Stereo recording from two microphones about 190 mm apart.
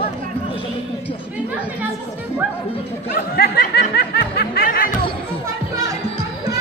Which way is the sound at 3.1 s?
55° left (ahead or behind).